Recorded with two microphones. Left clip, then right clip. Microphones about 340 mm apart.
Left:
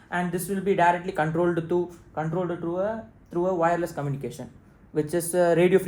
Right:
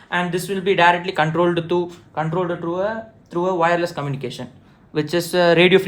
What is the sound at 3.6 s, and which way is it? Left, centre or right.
Speech, right.